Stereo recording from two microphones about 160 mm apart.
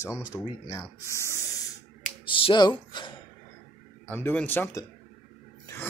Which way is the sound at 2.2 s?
35° left (ahead or behind).